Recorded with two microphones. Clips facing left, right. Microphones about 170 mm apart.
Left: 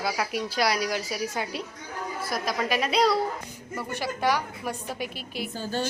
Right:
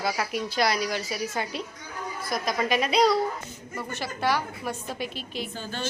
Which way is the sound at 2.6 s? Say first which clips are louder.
Right 2 dB; 5° left (ahead or behind).